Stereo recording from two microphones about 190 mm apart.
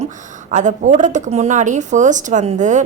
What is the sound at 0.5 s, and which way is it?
Speech, 40° right (ahead or behind).